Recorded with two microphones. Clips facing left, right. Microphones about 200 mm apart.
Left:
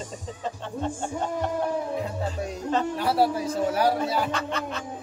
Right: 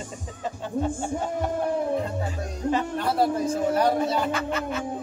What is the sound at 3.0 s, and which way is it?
A man's voice, 5° left (ahead or behind).